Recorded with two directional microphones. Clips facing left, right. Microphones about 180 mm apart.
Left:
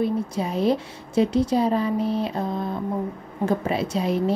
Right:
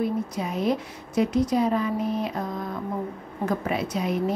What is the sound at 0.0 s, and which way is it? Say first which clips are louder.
Speech: left 3 dB; 30° left (ahead or behind).